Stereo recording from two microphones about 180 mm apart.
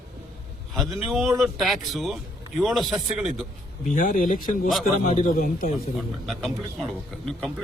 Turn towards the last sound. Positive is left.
turn(degrees=5)  # may be behind; listen again after turning